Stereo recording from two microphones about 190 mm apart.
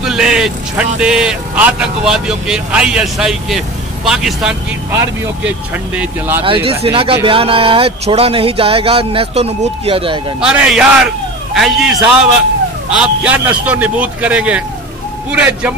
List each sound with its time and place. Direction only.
0.0 s a man's voice: 5° right (ahead or behind)
6.4 s speech: 30° right (ahead or behind)
10.4 s a man's voice: 5° right (ahead or behind)